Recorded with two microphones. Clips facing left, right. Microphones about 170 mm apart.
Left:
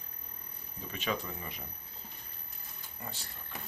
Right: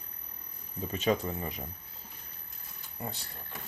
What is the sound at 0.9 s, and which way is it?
Speech, 40° right (ahead or behind).